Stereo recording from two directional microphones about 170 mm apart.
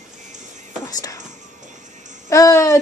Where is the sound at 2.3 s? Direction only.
20° left (ahead or behind).